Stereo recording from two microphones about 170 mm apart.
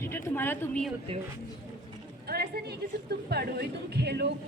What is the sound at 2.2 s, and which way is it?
A woman's voice, 65° right (ahead or behind).